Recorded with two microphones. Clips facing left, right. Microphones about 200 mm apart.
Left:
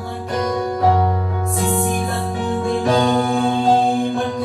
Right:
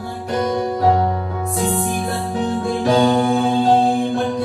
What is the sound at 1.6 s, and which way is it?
Music, centre (ahead or behind).